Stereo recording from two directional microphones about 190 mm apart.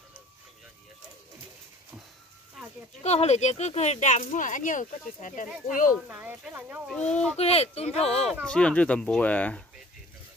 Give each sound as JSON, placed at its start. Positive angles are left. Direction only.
{"t": 3.0, "sound": "speech", "side_deg": 35}
{"t": 6.0, "sound": "speech", "side_deg": -10}
{"t": 7.0, "sound": "speech", "side_deg": 5}
{"t": 7.3, "sound": "speech", "side_deg": 35}
{"t": 8.3, "sound": "speech", "side_deg": 0}